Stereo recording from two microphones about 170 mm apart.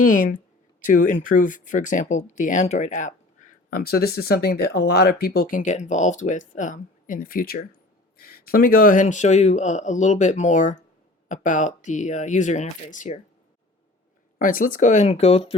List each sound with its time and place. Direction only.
0.0 s speech: 50° left (ahead or behind)
3.7 s speech: 60° left (ahead or behind)
14.3 s speech: 55° left (ahead or behind); by 15.5 s 35° left (ahead or behind)